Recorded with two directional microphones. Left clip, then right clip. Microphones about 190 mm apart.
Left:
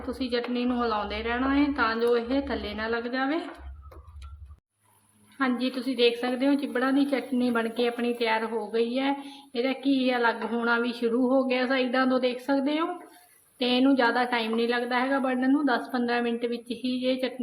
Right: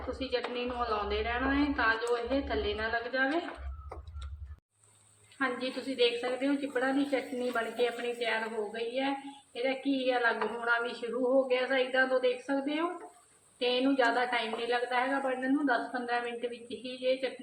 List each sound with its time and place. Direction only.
0.1 s a woman's voice: 60° left (ahead or behind)
5.4 s a woman's voice: 60° left (ahead or behind)